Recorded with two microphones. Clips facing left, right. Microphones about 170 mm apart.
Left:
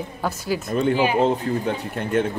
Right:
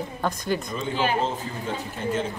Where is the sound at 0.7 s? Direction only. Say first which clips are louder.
Left 10 dB; 60° left (ahead or behind).